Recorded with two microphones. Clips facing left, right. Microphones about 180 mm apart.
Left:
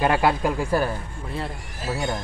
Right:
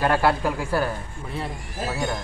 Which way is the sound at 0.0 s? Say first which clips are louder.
Even; 15° left (ahead or behind).